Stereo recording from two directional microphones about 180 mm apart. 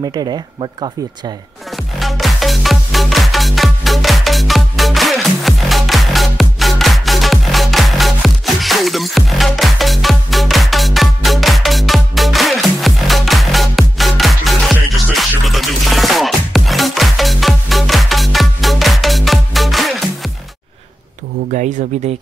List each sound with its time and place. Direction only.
0.1 s speech: 25° right (ahead or behind)
2.0 s music: centre (ahead or behind)
21.5 s speech: 45° right (ahead or behind)